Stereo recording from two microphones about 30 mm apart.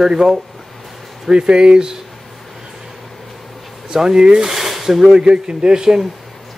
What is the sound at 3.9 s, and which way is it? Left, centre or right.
Speech, centre.